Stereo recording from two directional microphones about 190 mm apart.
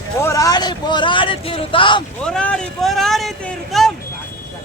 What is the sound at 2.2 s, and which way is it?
Speech, 5° left (ahead or behind).